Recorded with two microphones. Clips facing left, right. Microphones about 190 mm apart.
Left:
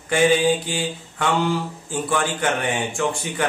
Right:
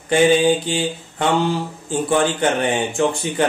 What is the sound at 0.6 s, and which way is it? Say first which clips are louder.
Mantra: right 4 dB; 25° right (ahead or behind).